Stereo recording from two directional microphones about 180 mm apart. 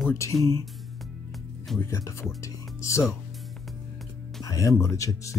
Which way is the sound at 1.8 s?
15° left (ahead or behind).